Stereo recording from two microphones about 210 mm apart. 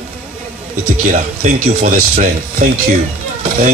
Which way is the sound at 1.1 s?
40° right (ahead or behind).